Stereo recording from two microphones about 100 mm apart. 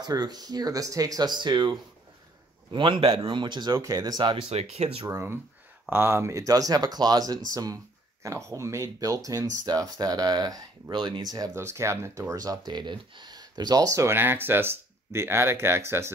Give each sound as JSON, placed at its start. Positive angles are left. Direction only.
{"t": 0.0, "sound": "speech", "side_deg": -40}
{"t": 2.7, "sound": "speech", "side_deg": -55}
{"t": 4.2, "sound": "speech", "side_deg": -55}
{"t": 4.5, "sound": "speech", "side_deg": -90}
{"t": 5.0, "sound": "speech", "side_deg": -25}
{"t": 11.5, "sound": "speech", "side_deg": -30}